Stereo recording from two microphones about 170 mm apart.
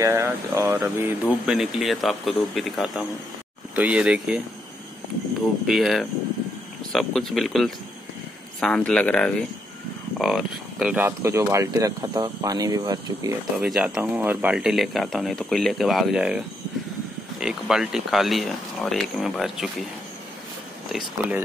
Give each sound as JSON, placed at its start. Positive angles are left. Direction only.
{"t": 0.0, "sound": "speech", "side_deg": -15}
{"t": 5.7, "sound": "speech", "side_deg": 0}
{"t": 13.6, "sound": "speech", "side_deg": -5}